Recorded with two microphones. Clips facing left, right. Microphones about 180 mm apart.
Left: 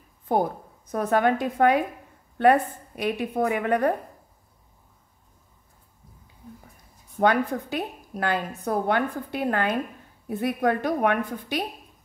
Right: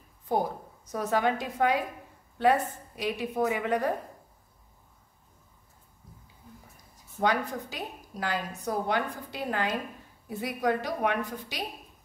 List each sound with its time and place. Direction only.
0.3 s a woman's voice: 55° left (ahead or behind)
7.2 s a woman's voice: 55° left (ahead or behind)